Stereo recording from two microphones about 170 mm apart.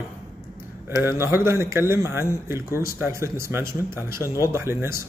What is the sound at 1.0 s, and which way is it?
Speech, 15° right (ahead or behind).